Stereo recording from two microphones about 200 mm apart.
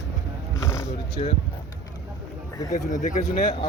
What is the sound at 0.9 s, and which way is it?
Speech, 30° left (ahead or behind).